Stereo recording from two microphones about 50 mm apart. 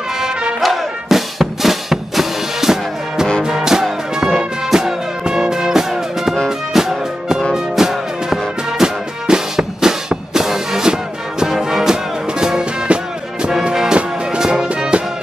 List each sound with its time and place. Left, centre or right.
0.2 s music: centre
0.6 s music: centre